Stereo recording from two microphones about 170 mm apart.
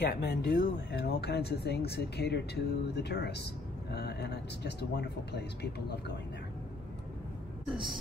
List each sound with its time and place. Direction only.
0.0 s speech: 85° left